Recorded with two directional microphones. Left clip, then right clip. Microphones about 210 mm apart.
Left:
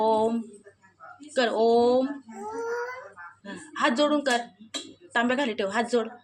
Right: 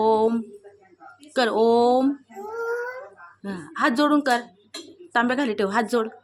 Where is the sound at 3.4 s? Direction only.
30° right (ahead or behind).